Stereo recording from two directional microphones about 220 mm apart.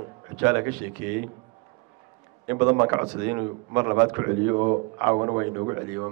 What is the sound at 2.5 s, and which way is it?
Speech, 15° right (ahead or behind).